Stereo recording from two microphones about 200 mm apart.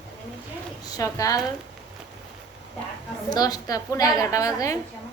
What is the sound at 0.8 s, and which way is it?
Speech, 15° left (ahead or behind).